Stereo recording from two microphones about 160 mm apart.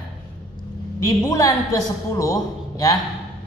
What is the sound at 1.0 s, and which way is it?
A woman's voice, 20° left (ahead or behind).